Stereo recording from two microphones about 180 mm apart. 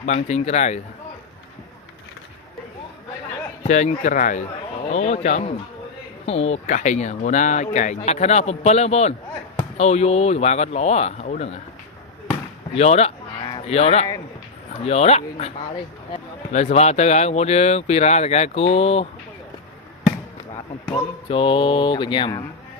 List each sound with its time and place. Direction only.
0.0 s speech: 40° left (ahead or behind)
3.6 s speech: 40° left (ahead or behind)
12.7 s speech: 35° left (ahead or behind)
21.2 s mantra: 30° left (ahead or behind)